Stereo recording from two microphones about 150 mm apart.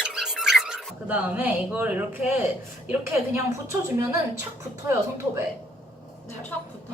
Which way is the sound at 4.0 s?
20° right (ahead or behind).